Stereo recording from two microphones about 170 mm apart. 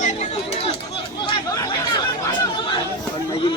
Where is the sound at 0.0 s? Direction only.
45° left (ahead or behind).